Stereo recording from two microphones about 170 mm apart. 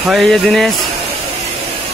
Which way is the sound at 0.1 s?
Centre (ahead or behind).